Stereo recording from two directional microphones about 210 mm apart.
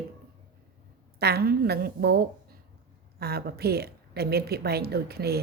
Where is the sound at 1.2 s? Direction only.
50° right (ahead or behind).